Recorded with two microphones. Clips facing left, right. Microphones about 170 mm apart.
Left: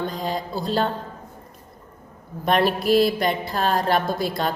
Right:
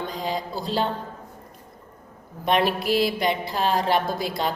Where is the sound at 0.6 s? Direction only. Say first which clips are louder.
Left 3 dB; 50° left (ahead or behind).